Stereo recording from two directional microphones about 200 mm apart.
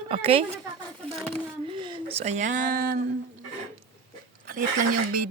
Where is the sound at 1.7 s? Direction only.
25° right (ahead or behind); by 3.0 s 45° right (ahead or behind).